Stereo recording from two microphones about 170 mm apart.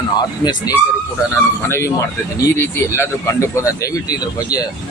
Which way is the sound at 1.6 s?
15° left (ahead or behind).